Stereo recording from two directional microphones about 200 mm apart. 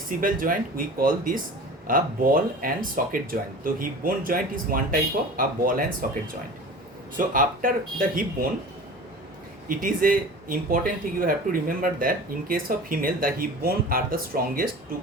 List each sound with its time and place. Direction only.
0.2 s speech: 45° right (ahead or behind)
9.6 s speech: 45° right (ahead or behind)